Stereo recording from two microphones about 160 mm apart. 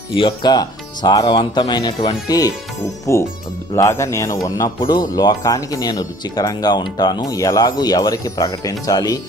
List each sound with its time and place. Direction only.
0.1 s speech: 30° left (ahead or behind)